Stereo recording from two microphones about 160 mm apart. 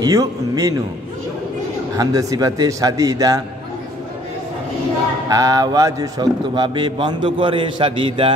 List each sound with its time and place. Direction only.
0.0 s a man's voice: 20° right (ahead or behind)
2.0 s a man's voice: 20° right (ahead or behind)
5.3 s a man's voice: 20° right (ahead or behind)